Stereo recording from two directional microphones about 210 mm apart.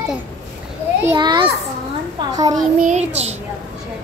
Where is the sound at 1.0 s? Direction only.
20° right (ahead or behind).